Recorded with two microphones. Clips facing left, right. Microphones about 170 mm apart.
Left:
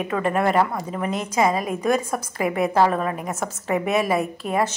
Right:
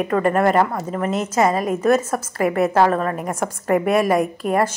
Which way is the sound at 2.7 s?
5° left (ahead or behind).